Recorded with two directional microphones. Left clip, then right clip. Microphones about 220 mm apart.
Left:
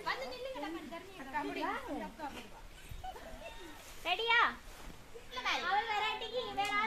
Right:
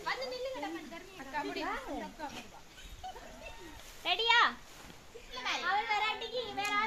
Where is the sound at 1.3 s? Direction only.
40° right (ahead or behind).